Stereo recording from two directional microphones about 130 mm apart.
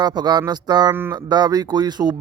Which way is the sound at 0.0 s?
35° right (ahead or behind).